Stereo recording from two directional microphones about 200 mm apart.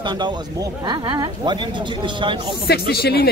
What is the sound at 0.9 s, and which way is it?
Speech, 20° right (ahead or behind).